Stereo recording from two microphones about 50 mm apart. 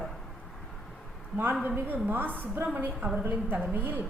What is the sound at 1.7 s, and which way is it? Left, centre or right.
A woman's voice, right.